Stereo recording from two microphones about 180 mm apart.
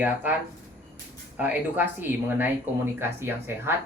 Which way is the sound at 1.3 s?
10° right (ahead or behind).